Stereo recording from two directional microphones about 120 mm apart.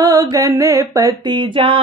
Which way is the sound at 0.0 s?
30° right (ahead or behind).